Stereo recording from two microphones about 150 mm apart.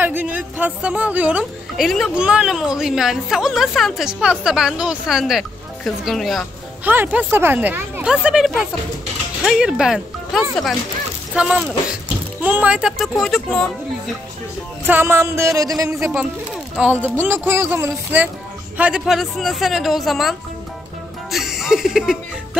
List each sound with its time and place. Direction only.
0.0 s a woman's voice: 10° right (ahead or behind)
6.8 s a woman's voice: 10° right (ahead or behind); by 13.7 s 5° left (ahead or behind)
14.9 s speech: 15° right (ahead or behind)
16.7 s a woman's voice: 10° right (ahead or behind)